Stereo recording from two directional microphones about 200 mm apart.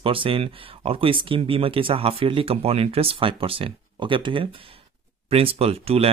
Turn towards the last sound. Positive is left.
turn(degrees=-30)  # may be behind; listen again after turning